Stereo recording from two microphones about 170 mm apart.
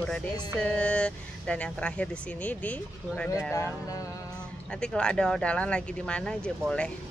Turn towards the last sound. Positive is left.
turn(degrees=5)  # may be behind; listen again after turning